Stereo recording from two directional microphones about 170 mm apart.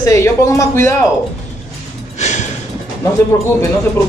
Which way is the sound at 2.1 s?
45° left (ahead or behind).